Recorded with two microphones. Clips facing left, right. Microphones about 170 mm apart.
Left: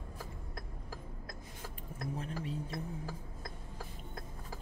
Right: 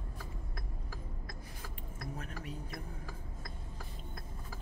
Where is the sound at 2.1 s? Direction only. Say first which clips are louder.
Left 6 dB; 30° left (ahead or behind).